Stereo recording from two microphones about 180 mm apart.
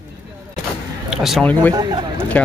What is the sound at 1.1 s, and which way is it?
Speech, centre (ahead or behind).